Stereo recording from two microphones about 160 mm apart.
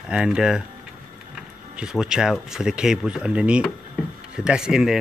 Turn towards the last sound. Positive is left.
turn(degrees=-5)  # may be behind; listen again after turning